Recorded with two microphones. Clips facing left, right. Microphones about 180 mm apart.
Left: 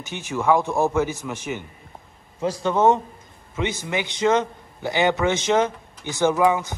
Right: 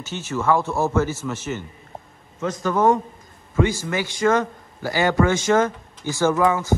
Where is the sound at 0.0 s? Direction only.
15° left (ahead or behind).